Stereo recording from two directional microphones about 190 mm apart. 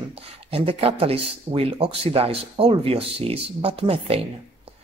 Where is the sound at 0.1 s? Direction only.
30° right (ahead or behind).